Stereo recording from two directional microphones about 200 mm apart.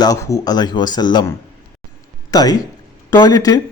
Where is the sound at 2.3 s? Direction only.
20° left (ahead or behind).